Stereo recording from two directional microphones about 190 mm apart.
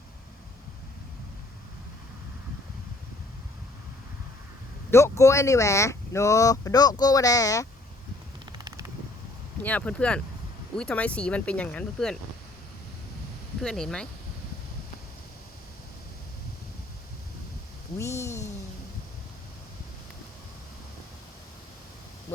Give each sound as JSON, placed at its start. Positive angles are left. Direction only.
{"t": 4.9, "sound": "speech", "side_deg": 15}
{"t": 8.5, "sound": "a sound", "side_deg": -20}
{"t": 9.6, "sound": "speech", "side_deg": 5}
{"t": 13.6, "sound": "speech", "side_deg": 0}
{"t": 17.9, "sound": "speech", "side_deg": 15}